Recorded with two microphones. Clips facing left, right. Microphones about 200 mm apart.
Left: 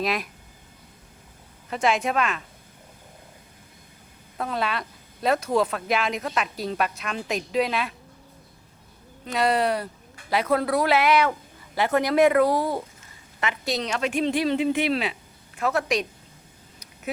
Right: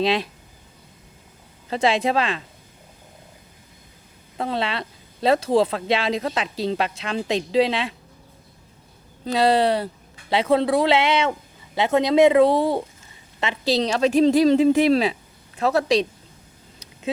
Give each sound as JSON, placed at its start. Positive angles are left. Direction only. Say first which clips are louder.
{"t": 0.0, "sound": "speech", "louder": "right 5 dB", "side_deg": -30}
{"t": 1.7, "sound": "a woman's voice", "louder": "right 3 dB", "side_deg": -30}
{"t": 4.4, "sound": "speech", "louder": "right 2 dB", "side_deg": -25}
{"t": 9.2, "sound": "a woman's voice", "louder": "right 4 dB", "side_deg": -30}